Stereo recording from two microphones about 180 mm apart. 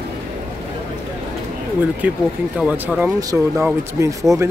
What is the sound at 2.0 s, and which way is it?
Speech, 10° right (ahead or behind).